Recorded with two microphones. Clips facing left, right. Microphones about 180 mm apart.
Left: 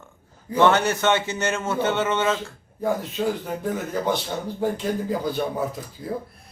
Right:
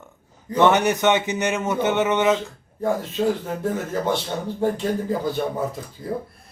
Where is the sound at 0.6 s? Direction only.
15° right (ahead or behind).